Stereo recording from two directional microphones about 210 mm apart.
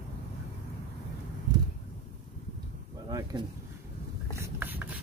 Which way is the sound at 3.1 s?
20° right (ahead or behind).